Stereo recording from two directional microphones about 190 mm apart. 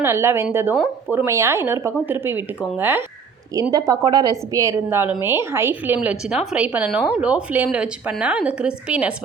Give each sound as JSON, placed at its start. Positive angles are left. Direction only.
{"t": 0.0, "sound": "a woman's voice", "side_deg": -15}